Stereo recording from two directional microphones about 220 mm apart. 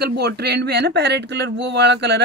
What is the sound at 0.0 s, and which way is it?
Speech, 50° right (ahead or behind).